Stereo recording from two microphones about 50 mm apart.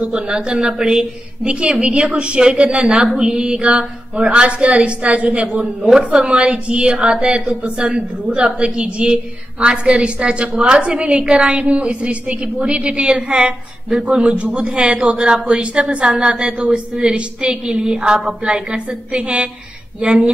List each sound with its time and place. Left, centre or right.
0.1 s a woman's voice: centre